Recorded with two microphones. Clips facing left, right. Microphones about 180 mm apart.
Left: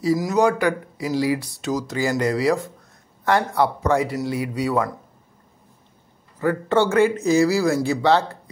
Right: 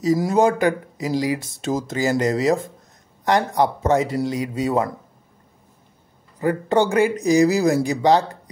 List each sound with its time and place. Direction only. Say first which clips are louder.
0.1 s a man's voice: right 1 dB; 30° right (ahead or behind)
6.4 s speech: right 1 dB; 15° right (ahead or behind)